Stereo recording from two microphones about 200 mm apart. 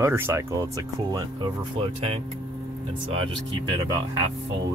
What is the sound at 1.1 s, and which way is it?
Speech, 25° right (ahead or behind).